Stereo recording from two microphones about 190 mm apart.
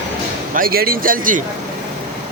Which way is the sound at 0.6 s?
50° right (ahead or behind).